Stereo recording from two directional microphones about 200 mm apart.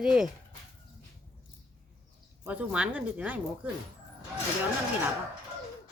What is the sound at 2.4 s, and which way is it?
Speech, 10° right (ahead or behind).